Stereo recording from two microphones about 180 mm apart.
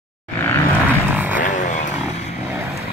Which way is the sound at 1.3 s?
45° left (ahead or behind).